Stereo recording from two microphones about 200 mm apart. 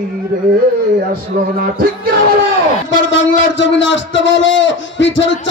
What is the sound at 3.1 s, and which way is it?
A man's voice, 65° left (ahead or behind).